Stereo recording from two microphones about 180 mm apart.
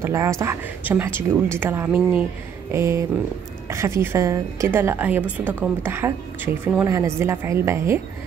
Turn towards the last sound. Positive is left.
turn(degrees=-15)  # may be behind; listen again after turning